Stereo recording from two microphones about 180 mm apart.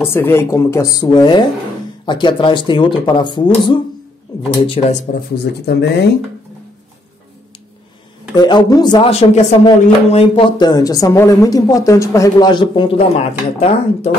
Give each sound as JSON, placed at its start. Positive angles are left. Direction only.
{"t": 0.0, "sound": "speech", "side_deg": 10}
{"t": 5.3, "sound": "speech", "side_deg": 65}
{"t": 8.4, "sound": "speech", "side_deg": 25}